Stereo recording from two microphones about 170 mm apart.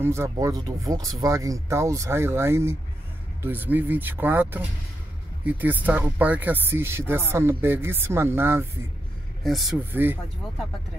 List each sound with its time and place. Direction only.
0.0 s speech: 15° right (ahead or behind)
9.4 s speech: centre (ahead or behind)